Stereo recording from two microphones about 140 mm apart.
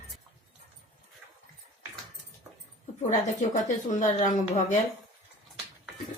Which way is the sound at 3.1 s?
60° left (ahead or behind).